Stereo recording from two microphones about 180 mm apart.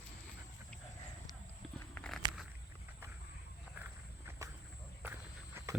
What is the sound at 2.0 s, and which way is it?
Walk, 5° left (ahead or behind).